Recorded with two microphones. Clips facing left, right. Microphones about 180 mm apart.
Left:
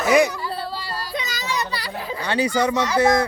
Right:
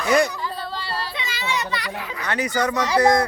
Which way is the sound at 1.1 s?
40° left (ahead or behind).